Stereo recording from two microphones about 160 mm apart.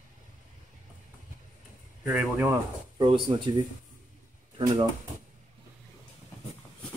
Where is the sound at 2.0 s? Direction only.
10° right (ahead or behind).